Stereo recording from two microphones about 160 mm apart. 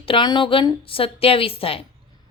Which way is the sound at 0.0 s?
30° left (ahead or behind).